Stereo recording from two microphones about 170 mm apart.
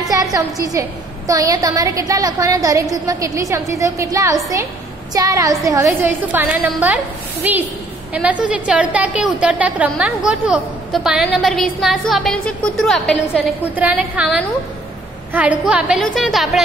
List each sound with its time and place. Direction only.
0.1 s a woman's voice: 20° right (ahead or behind); by 13.2 s 5° left (ahead or behind)
13.7 s a woman's voice: 10° right (ahead or behind)